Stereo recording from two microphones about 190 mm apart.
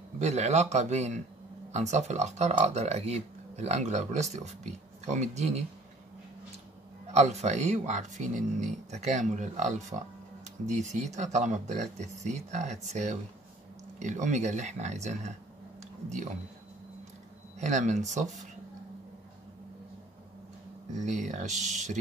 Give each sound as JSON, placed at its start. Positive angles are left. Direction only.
{"t": 0.2, "sound": "speech", "side_deg": -35}
{"t": 7.1, "sound": "speech", "side_deg": -35}
{"t": 15.8, "sound": "a sound", "side_deg": -40}
{"t": 17.6, "sound": "speech", "side_deg": -40}
{"t": 21.0, "sound": "speech", "side_deg": -40}